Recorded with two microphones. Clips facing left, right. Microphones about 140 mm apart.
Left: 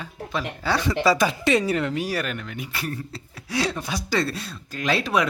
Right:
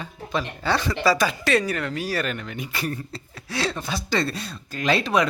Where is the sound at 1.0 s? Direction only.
20° left (ahead or behind).